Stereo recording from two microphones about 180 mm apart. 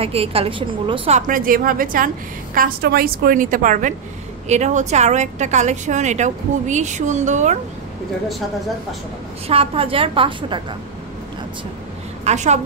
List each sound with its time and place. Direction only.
0.0 s a woman's voice: 35° right (ahead or behind)
1.2 s a woman's voice: 50° right (ahead or behind)
9.5 s a woman's voice: 30° right (ahead or behind)
12.3 s a woman's voice: 40° right (ahead or behind)